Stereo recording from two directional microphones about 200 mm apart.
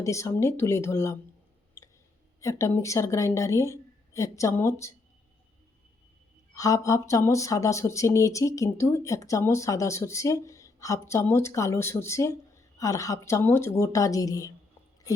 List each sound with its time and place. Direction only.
0.0 s speech: 15° left (ahead or behind)
1.8 s clicking: 15° left (ahead or behind)
2.4 s speech: 15° left (ahead or behind)
6.5 s speech: 15° left (ahead or behind)